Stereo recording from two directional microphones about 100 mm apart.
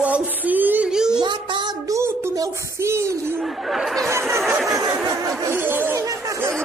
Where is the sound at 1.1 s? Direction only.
50° right (ahead or behind).